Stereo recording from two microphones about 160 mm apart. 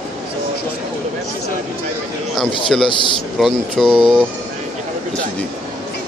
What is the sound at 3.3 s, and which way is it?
Speech, centre (ahead or behind).